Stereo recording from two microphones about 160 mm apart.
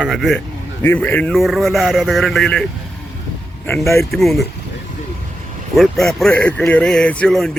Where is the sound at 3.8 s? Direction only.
15° left (ahead or behind).